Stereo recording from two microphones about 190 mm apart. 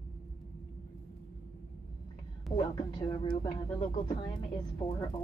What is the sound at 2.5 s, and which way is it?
Speech, 25° left (ahead or behind).